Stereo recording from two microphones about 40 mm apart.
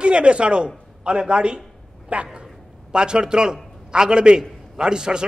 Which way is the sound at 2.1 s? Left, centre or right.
Right.